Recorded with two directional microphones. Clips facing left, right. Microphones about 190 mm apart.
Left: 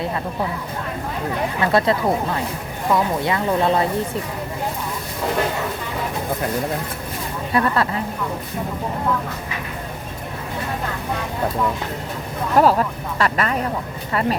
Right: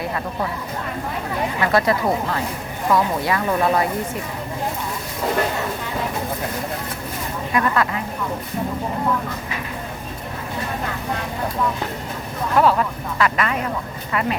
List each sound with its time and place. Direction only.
1.6 s speech: 25° left (ahead or behind)
7.5 s speech: 35° left (ahead or behind)
12.5 s speech: 35° left (ahead or behind)